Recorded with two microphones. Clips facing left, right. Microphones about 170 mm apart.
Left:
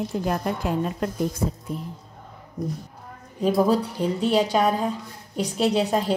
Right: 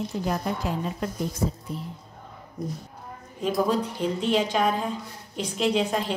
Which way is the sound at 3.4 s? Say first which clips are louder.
Left 4 dB; 35° left (ahead or behind).